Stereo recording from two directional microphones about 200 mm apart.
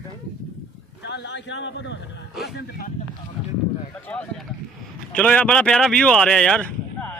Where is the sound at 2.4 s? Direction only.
55° left (ahead or behind).